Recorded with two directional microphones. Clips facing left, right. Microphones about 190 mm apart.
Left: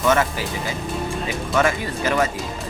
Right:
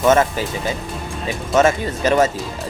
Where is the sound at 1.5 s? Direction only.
25° right (ahead or behind).